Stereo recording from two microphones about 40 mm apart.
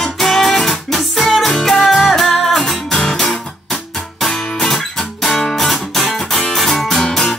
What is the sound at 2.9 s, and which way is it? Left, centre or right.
Music, centre.